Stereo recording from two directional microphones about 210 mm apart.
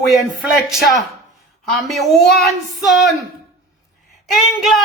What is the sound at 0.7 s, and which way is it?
Speech, centre (ahead or behind).